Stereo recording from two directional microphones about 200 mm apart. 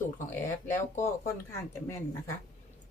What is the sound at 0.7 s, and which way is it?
Speech, 10° left (ahead or behind).